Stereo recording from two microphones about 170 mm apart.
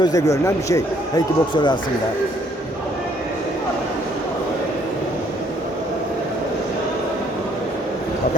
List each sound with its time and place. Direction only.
0.0 s speech: 20° left (ahead or behind)